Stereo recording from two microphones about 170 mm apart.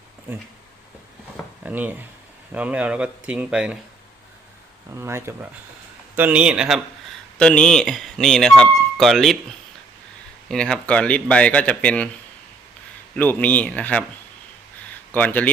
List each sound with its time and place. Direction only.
1.6 s speech: 10° right (ahead or behind)
4.9 s speech: 15° right (ahead or behind); by 9.4 s centre (ahead or behind)
10.5 s speech: 5° left (ahead or behind)
13.1 s speech: 10° left (ahead or behind)
15.1 s speech: 10° left (ahead or behind)